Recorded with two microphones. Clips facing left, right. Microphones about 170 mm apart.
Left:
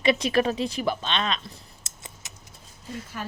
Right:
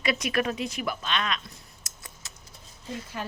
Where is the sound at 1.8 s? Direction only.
20° left (ahead or behind).